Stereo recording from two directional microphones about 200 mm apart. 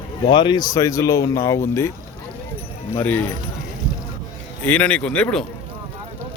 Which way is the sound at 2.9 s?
10° left (ahead or behind).